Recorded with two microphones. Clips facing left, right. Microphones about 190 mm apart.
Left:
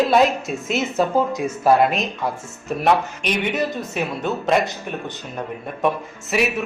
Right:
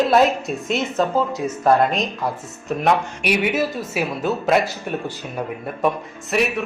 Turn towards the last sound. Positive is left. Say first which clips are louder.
# right 1 dB
turn(degrees=0)  # may be behind; listen again after turning